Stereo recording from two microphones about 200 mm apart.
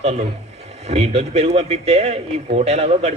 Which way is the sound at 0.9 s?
30° right (ahead or behind).